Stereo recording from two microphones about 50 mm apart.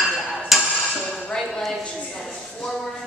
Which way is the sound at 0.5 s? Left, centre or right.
Centre.